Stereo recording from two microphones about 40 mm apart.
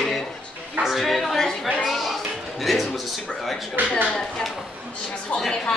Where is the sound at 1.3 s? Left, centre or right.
Centre.